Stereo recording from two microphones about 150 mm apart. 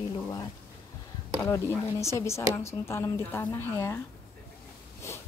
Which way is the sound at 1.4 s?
15° left (ahead or behind).